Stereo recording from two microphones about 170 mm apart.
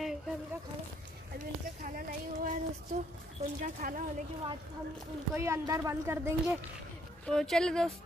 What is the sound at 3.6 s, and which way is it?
Speech, 50° right (ahead or behind).